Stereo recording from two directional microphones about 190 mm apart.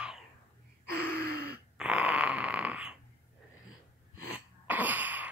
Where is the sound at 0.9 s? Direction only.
55° right (ahead or behind).